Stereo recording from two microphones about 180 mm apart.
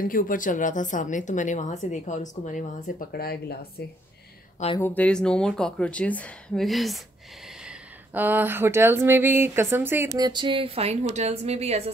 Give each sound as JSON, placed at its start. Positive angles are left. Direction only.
{"t": 0.0, "sound": "speech", "side_deg": 50}
{"t": 4.7, "sound": "speech", "side_deg": 10}